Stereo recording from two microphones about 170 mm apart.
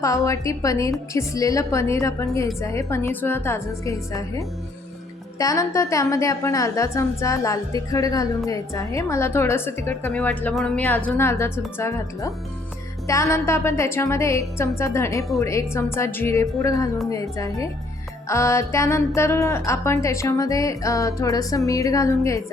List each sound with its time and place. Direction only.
0.0 s a woman's voice: 20° left (ahead or behind)
5.4 s a woman's voice: 20° left (ahead or behind); by 10.8 s centre (ahead or behind)
10.8 s a woman's voice: 10° left (ahead or behind)